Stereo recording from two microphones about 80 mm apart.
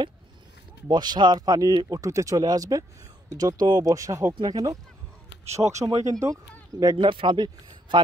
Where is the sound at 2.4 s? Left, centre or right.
Right.